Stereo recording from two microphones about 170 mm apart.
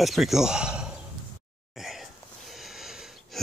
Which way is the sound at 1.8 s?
Centre (ahead or behind).